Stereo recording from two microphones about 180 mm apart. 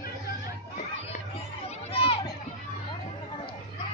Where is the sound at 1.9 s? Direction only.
35° left (ahead or behind).